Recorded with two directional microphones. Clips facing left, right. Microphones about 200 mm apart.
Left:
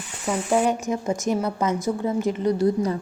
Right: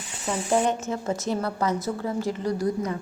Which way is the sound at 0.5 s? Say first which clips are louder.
Left 2 dB; 10° left (ahead or behind).